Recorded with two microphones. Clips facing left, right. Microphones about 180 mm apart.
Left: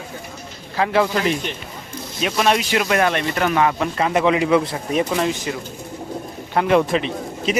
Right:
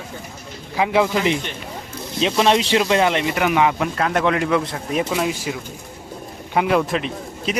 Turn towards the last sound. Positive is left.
turn(degrees=0)  # may be behind; listen again after turning